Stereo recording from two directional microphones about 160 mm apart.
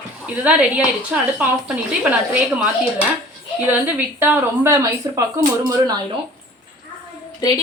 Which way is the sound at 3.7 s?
15° right (ahead or behind).